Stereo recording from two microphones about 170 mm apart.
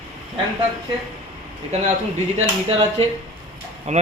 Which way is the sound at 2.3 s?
35° right (ahead or behind).